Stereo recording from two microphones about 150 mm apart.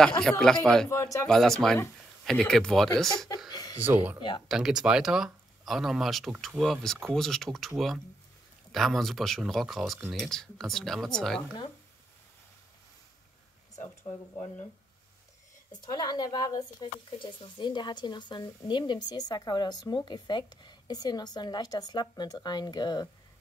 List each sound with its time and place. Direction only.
0.2 s speech: 5° left (ahead or behind)
0.8 s speech: 20° left (ahead or behind)
1.2 s speech: centre (ahead or behind)
3.4 s chuckle: 25° left (ahead or behind)
3.8 s speech: 10° right (ahead or behind); by 11.4 s 5° left (ahead or behind)
13.7 s speech: 45° left (ahead or behind)
15.7 s speech: 30° left (ahead or behind)